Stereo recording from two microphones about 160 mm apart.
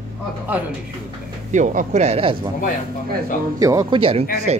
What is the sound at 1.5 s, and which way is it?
Speech, 55° right (ahead or behind).